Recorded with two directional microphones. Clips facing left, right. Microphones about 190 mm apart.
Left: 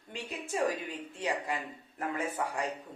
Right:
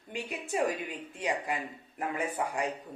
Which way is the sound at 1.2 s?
15° right (ahead or behind).